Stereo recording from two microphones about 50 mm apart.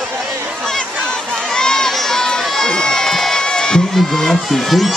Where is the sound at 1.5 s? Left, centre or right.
Centre.